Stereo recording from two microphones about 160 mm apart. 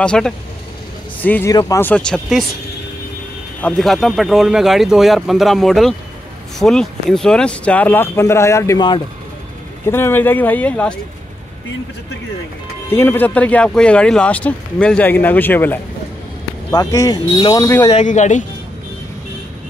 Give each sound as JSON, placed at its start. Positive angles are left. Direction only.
{"t": 0.0, "sound": "speech", "side_deg": 5}
{"t": 1.5, "sound": "speech", "side_deg": 25}
{"t": 1.8, "sound": "speech", "side_deg": 10}
{"t": 3.6, "sound": "speech", "side_deg": 0}
{"t": 9.8, "sound": "speech", "side_deg": 15}
{"t": 12.9, "sound": "speech", "side_deg": 15}
{"t": 16.7, "sound": "speech", "side_deg": 25}
{"t": 17.6, "sound": "speech", "side_deg": 15}
{"t": 17.9, "sound": "speech", "side_deg": 45}